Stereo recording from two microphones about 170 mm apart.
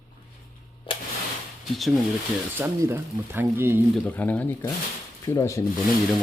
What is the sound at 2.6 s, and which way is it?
Speech, 15° right (ahead or behind).